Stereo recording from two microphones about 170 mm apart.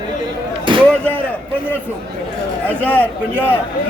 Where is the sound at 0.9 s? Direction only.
10° left (ahead or behind).